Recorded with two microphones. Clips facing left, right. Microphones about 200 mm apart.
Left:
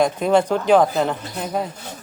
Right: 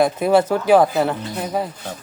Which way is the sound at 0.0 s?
5° right (ahead or behind).